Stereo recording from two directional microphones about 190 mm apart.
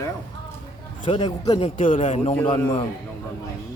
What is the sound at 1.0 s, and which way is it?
A man's voice, 25° left (ahead or behind).